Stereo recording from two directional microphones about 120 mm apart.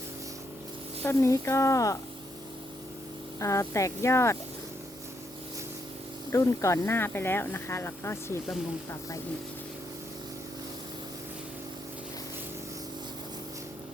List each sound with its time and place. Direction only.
1.0 s speech: 25° left (ahead or behind)
3.4 s speech: 25° left (ahead or behind)
6.3 s speech: 25° left (ahead or behind)